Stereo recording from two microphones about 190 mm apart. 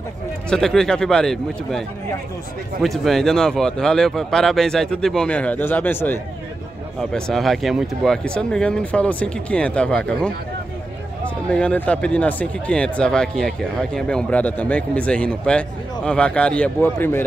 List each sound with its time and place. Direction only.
0.5 s speech: 5° left (ahead or behind)
11.5 s speech: 5° left (ahead or behind)